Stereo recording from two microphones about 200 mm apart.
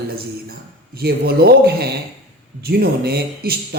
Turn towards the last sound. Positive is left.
turn(degrees=-55)  # may be behind; listen again after turning